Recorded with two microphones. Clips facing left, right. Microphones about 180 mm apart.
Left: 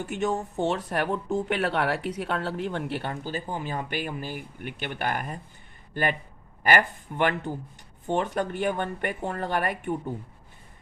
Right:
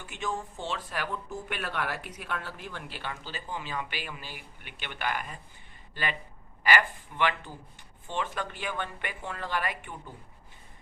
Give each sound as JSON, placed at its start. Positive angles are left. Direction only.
{"t": 0.0, "sound": "speech", "side_deg": 65}
{"t": 3.1, "sound": "speech", "side_deg": 45}